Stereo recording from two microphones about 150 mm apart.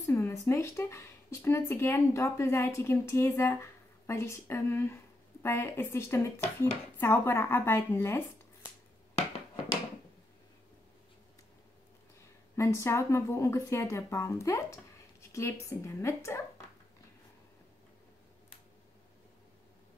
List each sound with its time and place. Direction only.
0.0 s speech: 20° left (ahead or behind)
12.2 s a woman's voice: 20° left (ahead or behind)
15.8 s a woman's voice: 20° left (ahead or behind)